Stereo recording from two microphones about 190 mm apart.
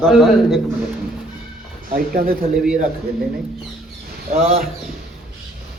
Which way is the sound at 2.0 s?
50° right (ahead or behind).